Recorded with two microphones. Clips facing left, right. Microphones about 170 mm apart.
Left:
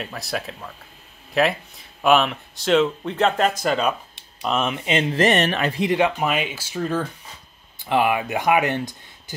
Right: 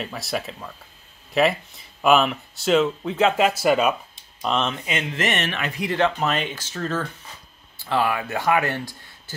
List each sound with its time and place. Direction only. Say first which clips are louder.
0.0 s speech: right 1 dB; centre (ahead or behind)
4.4 s speech: left 1 dB; 5° left (ahead or behind)
4.8 s speech: left 6 dB; 30° left (ahead or behind)
5.9 s speech: even; 10° left (ahead or behind)